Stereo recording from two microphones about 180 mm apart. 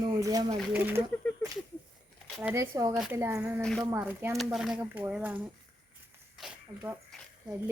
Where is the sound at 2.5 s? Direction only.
20° right (ahead or behind).